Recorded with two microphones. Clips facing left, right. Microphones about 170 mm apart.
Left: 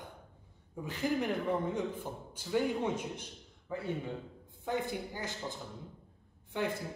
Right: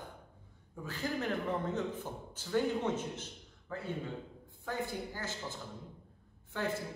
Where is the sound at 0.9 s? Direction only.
15° left (ahead or behind).